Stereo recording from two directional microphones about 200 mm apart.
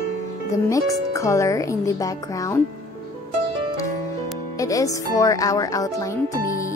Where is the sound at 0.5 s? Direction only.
15° left (ahead or behind).